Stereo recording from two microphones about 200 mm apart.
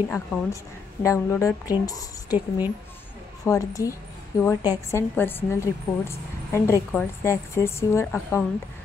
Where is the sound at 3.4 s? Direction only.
15° left (ahead or behind).